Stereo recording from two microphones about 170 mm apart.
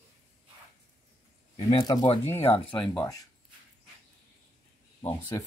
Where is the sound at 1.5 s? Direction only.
30° left (ahead or behind).